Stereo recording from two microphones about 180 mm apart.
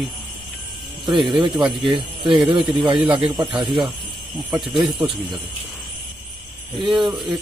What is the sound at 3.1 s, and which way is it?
Speech, 5° right (ahead or behind).